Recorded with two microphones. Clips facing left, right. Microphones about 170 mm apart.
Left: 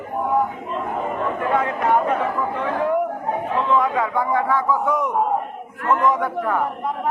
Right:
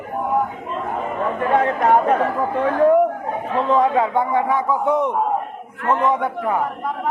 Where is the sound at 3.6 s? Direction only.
30° right (ahead or behind).